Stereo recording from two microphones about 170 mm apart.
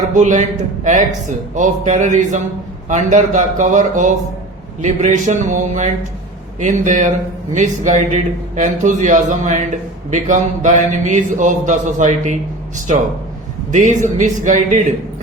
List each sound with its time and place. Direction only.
0.1 s a man's voice: 50° right (ahead or behind)
1.5 s a man's voice: 50° right (ahead or behind)
13.7 s a man's voice: 45° right (ahead or behind)